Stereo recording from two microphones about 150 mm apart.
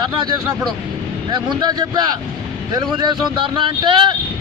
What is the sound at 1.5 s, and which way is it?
Speech, 30° right (ahead or behind).